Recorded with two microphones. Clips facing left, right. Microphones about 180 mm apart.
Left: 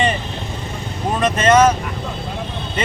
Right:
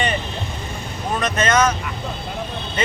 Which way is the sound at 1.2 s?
30° left (ahead or behind).